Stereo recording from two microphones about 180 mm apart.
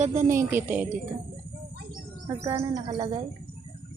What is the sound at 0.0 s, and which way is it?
Speech, 45° right (ahead or behind).